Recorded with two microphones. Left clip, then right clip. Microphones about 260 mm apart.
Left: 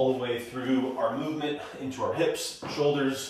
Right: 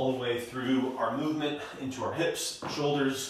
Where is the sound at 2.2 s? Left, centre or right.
Centre.